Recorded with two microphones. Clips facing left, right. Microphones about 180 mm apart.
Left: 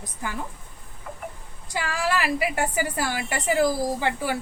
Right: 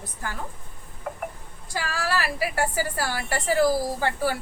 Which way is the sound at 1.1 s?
50° right (ahead or behind).